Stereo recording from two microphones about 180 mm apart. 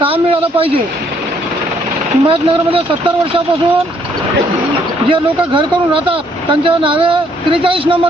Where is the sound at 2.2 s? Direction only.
30° right (ahead or behind).